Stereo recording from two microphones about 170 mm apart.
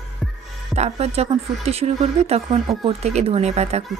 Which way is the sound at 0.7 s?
40° right (ahead or behind).